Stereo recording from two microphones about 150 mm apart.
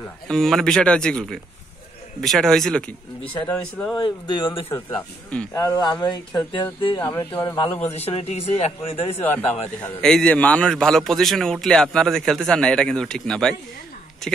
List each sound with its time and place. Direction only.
0.3 s a man's voice: centre (ahead or behind)
3.9 s speech: 30° left (ahead or behind)
7.9 s a man's voice: 40° left (ahead or behind)
9.8 s a man's voice: 5° left (ahead or behind)